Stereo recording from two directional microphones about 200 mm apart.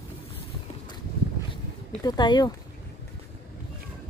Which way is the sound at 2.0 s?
20° left (ahead or behind).